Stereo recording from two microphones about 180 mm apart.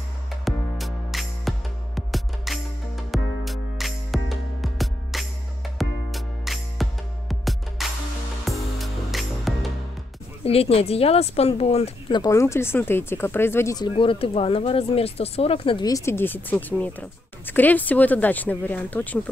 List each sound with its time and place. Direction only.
0.5 s music: centre (ahead or behind)
10.4 s speech: 35° left (ahead or behind)
12.2 s speech: 15° left (ahead or behind)